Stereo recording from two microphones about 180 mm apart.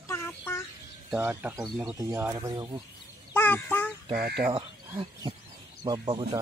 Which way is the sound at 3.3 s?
10° left (ahead or behind).